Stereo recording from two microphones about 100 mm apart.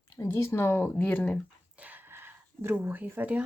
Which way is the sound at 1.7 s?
15° right (ahead or behind).